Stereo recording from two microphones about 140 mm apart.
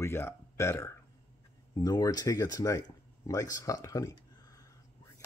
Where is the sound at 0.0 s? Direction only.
20° left (ahead or behind).